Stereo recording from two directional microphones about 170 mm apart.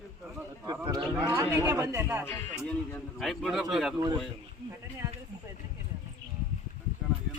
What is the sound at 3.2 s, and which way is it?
Speech, centre (ahead or behind).